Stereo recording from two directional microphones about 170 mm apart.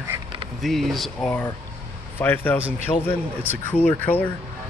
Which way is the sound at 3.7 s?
10° left (ahead or behind).